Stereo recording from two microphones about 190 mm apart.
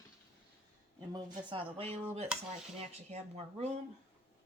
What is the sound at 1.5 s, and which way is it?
A woman's voice, 30° right (ahead or behind).